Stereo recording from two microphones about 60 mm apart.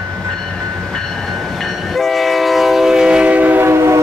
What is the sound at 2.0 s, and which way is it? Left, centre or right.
Train, centre.